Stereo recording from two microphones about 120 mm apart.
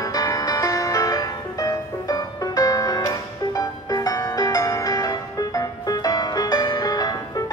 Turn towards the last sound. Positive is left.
turn(degrees=30)  # may be behind; listen again after turning